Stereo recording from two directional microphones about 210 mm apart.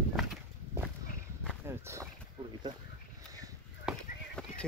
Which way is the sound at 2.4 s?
25° right (ahead or behind).